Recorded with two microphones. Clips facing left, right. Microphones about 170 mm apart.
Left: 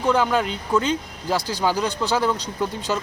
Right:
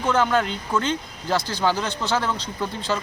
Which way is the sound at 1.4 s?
40° left (ahead or behind).